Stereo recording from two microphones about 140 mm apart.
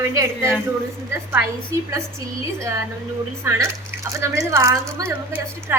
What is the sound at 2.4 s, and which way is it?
A woman's voice, 20° right (ahead or behind).